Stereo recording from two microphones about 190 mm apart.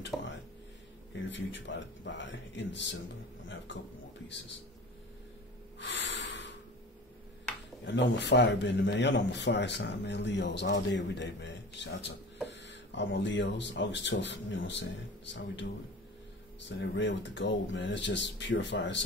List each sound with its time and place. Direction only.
0.1 s a sound: centre (ahead or behind)
1.3 s speech: 70° left (ahead or behind)
5.8 s snort: 70° left (ahead or behind)
7.8 s speech: 70° left (ahead or behind)
16.6 s speech: 70° left (ahead or behind)